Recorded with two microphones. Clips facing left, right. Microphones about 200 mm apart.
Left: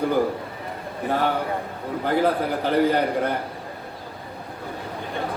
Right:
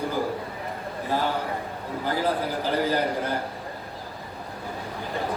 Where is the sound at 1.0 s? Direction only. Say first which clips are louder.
Left 4 dB; 60° left (ahead or behind).